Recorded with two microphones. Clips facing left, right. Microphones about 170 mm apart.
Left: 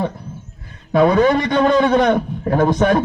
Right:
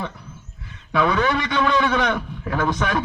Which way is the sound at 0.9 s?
45° left (ahead or behind).